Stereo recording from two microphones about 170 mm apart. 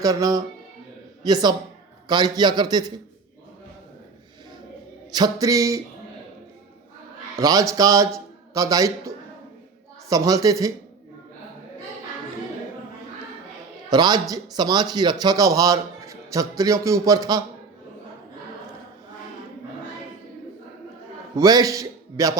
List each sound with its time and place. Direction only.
0.0 s a man's voice: 20° right (ahead or behind)
5.1 s a man's voice: 20° right (ahead or behind)
7.3 s a man's voice: 20° right (ahead or behind)
13.9 s a man's voice: 25° right (ahead or behind)
21.3 s a man's voice: 20° right (ahead or behind)